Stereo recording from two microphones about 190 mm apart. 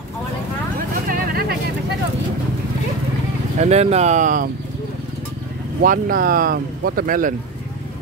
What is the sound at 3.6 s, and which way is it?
Speech, 35° right (ahead or behind).